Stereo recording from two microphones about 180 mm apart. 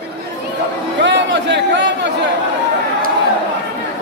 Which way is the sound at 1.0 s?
75° right (ahead or behind).